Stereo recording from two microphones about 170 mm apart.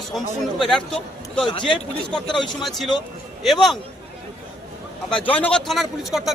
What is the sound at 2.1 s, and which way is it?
Speech, 5° left (ahead or behind).